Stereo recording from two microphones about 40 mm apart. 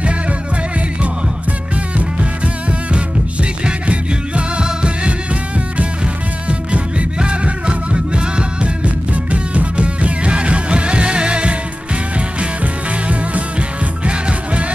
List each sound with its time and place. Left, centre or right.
2.1 s music: right
7.2 s music: right
14.0 s music: right